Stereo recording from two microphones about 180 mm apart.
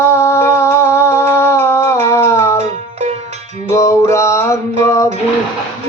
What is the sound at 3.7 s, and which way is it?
Music, 15° left (ahead or behind).